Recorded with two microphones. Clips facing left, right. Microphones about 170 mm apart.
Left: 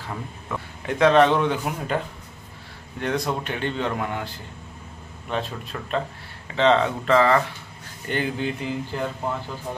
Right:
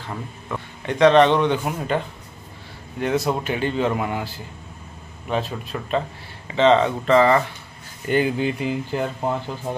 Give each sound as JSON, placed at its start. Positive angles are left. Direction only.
{"t": 0.1, "sound": "speech", "side_deg": 0}
{"t": 3.0, "sound": "speech", "side_deg": -5}
{"t": 5.3, "sound": "speech", "side_deg": -5}